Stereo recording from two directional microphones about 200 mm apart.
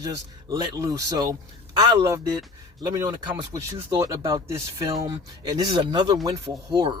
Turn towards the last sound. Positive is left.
turn(degrees=-25)  # may be behind; listen again after turning